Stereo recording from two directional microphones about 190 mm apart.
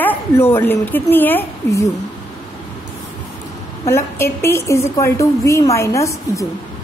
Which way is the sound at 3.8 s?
15° left (ahead or behind).